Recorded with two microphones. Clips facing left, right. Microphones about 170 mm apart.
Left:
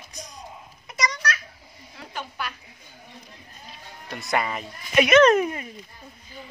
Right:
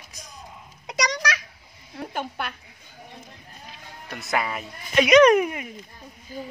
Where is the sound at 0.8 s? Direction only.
80° right.